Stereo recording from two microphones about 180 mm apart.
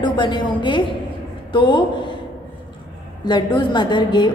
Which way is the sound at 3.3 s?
25° left (ahead or behind).